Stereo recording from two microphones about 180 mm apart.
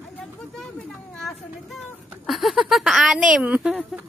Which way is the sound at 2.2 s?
Centre (ahead or behind).